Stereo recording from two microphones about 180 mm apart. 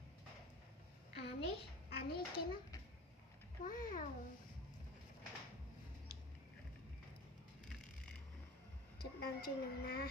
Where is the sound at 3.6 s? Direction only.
50° left (ahead or behind).